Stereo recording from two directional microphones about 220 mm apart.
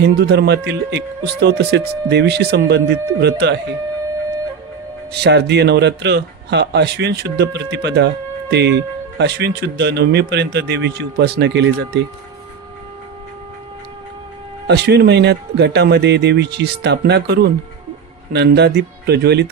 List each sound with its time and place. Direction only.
0.0 s speech: 50° right (ahead or behind)
5.1 s speech: 50° right (ahead or behind)
14.7 s speech: 50° right (ahead or behind)